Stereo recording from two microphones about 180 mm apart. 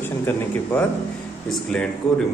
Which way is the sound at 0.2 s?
10° left (ahead or behind).